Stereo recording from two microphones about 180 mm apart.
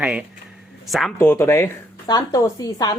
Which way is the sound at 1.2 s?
15° left (ahead or behind).